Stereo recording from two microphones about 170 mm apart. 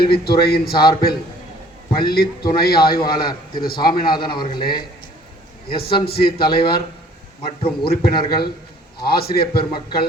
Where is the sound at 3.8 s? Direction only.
25° left (ahead or behind).